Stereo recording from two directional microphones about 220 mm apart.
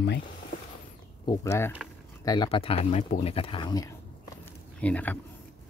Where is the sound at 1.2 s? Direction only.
10° left (ahead or behind).